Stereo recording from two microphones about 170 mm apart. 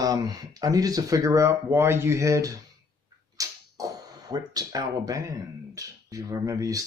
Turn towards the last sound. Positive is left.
turn(degrees=-20)  # may be behind; listen again after turning